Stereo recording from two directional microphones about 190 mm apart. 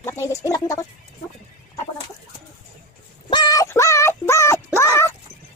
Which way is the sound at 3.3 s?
20° left (ahead or behind).